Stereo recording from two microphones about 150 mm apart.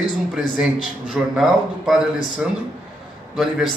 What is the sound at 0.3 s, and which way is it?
A man's voice, 5° right (ahead or behind).